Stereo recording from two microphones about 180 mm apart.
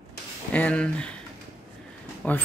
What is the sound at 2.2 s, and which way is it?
Speech, 10° left (ahead or behind).